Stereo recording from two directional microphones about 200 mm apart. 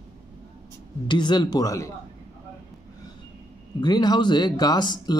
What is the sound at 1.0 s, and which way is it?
Speech, 20° left (ahead or behind).